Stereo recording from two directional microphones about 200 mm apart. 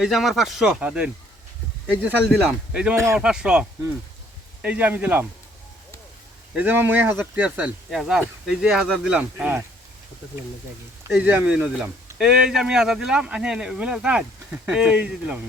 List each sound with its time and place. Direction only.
0.0 s speech: centre (ahead or behind)
2.7 s speech: 10° right (ahead or behind)
6.5 s speech: 10° right (ahead or behind)
11.1 s speech: 10° right (ahead or behind)